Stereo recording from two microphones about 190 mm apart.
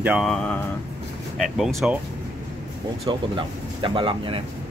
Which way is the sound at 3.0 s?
25° right (ahead or behind).